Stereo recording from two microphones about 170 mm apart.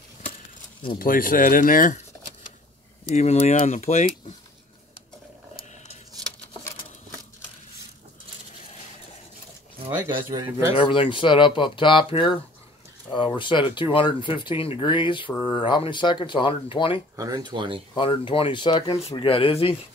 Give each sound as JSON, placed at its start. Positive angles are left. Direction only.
{"t": 0.9, "sound": "speech", "side_deg": 55}
{"t": 3.2, "sound": "speech", "side_deg": 40}
{"t": 9.8, "sound": "speech", "side_deg": -10}
{"t": 10.7, "sound": "speech", "side_deg": 30}
{"t": 13.4, "sound": "speech", "side_deg": 30}
{"t": 17.2, "sound": "speech", "side_deg": -25}
{"t": 17.9, "sound": "speech", "side_deg": 30}